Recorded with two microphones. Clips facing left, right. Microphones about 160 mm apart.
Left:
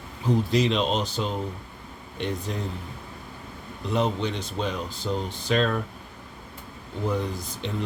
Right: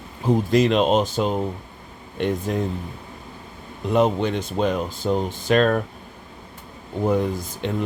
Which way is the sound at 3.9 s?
50° right (ahead or behind).